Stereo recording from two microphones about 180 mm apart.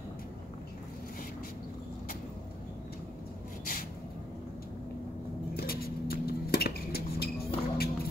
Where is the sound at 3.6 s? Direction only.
55° left (ahead or behind).